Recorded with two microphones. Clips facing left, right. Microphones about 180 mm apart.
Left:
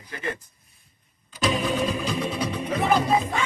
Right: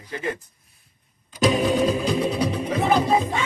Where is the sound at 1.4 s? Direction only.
45° right (ahead or behind).